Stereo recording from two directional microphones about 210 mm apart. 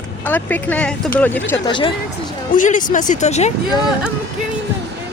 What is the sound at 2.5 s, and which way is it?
Speech, 40° left (ahead or behind).